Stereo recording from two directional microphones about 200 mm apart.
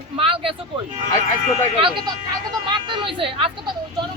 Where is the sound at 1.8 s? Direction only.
25° right (ahead or behind).